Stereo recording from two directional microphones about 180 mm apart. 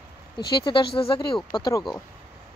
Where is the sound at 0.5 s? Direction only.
25° left (ahead or behind).